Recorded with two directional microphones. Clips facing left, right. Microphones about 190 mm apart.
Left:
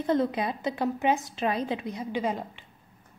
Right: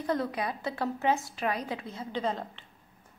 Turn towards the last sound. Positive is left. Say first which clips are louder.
# left 2 dB
turn(degrees=10)  # may be behind; listen again after turning